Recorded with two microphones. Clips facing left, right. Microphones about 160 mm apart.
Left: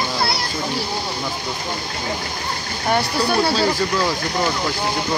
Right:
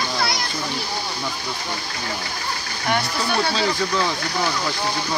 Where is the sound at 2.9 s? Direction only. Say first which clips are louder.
Left 4 dB; 35° left (ahead or behind).